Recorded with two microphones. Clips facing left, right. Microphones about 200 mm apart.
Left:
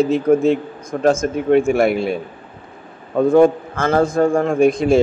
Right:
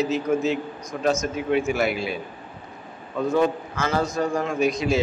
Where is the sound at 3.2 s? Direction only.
55° left (ahead or behind).